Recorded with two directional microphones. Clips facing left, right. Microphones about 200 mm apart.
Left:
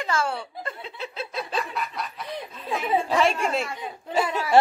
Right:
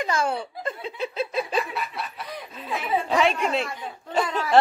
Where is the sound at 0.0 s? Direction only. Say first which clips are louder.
Right 2 dB; 15° right (ahead or behind).